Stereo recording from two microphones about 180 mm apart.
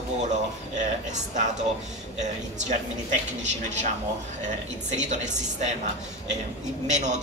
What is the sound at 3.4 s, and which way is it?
Speech, 40° right (ahead or behind).